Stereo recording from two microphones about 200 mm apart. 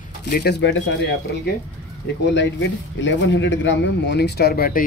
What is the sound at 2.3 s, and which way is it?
Speech, 65° left (ahead or behind).